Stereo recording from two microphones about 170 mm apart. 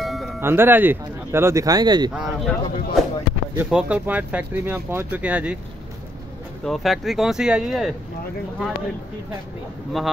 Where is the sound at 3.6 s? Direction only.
5° right (ahead or behind).